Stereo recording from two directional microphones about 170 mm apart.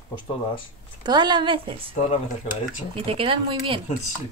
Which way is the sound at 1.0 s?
25° right (ahead or behind).